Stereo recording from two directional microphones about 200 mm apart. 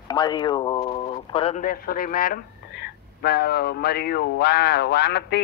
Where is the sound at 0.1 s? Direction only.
20° left (ahead or behind).